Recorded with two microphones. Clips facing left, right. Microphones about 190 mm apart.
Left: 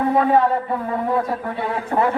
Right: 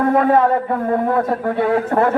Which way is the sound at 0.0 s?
55° right (ahead or behind).